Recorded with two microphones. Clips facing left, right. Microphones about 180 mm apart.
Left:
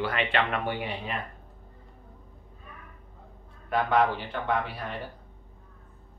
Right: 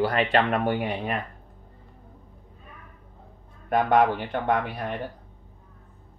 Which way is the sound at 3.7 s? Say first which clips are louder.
Right 4 dB; 50° right (ahead or behind).